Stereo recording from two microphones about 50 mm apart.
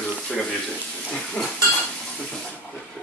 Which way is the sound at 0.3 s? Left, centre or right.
Centre.